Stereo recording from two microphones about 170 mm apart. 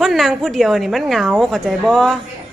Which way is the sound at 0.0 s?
Centre (ahead or behind).